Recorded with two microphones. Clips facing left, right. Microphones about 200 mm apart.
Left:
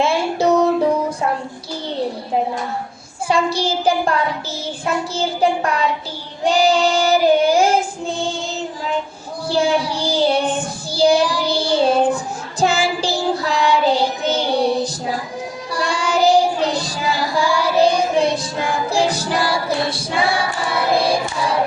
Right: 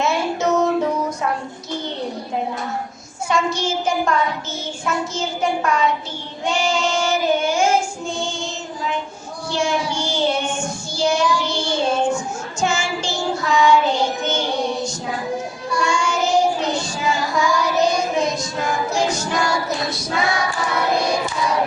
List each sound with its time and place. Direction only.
0.0 s music: 30° left (ahead or behind)
3.2 s child singing: 35° left (ahead or behind)
9.5 s child singing: 35° left (ahead or behind)
18.9 s choir: 35° left (ahead or behind)